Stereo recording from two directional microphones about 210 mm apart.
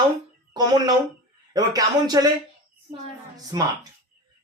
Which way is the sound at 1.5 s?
15° right (ahead or behind).